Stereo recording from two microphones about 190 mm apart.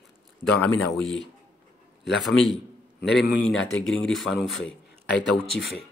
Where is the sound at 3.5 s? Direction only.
90° left.